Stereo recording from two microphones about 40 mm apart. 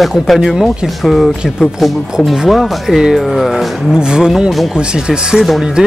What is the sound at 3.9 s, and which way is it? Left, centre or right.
Speech, centre.